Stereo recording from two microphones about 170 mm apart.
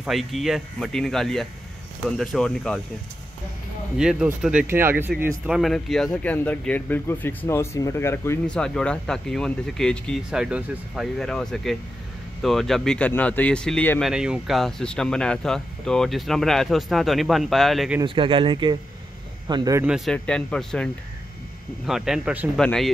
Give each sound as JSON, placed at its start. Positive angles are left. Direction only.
{"t": 0.0, "sound": "speech", "side_deg": 0}
{"t": 4.0, "sound": "speech", "side_deg": -5}
{"t": 5.5, "sound": "speech", "side_deg": 0}
{"t": 18.0, "sound": "speech", "side_deg": -30}
{"t": 20.1, "sound": "speech", "side_deg": 5}
{"t": 22.6, "sound": "speech", "side_deg": 5}